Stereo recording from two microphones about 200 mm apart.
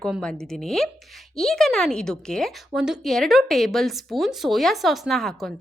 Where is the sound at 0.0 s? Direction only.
5° left (ahead or behind).